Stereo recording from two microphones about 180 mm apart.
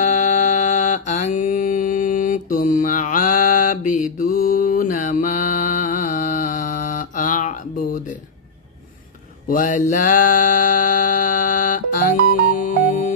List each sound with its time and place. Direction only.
0.0 s mantra: 40° left (ahead or behind)
9.5 s music: 45° left (ahead or behind)